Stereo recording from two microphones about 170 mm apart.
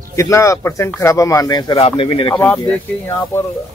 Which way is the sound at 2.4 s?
10° left (ahead or behind).